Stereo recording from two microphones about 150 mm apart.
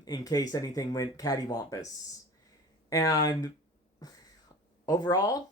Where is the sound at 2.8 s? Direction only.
25° left (ahead or behind).